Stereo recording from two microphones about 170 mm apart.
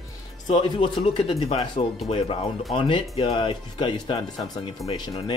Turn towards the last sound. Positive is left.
turn(degrees=25)  # may be behind; listen again after turning